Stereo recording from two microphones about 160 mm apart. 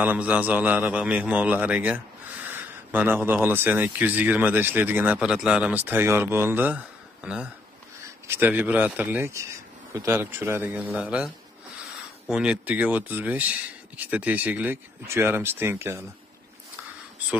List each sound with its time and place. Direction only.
0.0 s speech: 10° right (ahead or behind)